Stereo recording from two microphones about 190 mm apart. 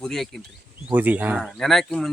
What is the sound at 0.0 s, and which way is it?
Speech, centre (ahead or behind).